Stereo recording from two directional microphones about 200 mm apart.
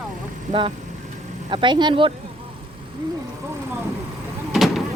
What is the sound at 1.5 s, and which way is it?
Speech, 25° right (ahead or behind).